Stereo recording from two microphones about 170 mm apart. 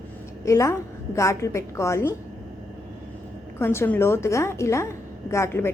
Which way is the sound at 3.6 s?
15° left (ahead or behind).